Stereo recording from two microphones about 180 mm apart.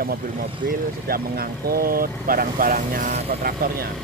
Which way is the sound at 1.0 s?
55° right (ahead or behind).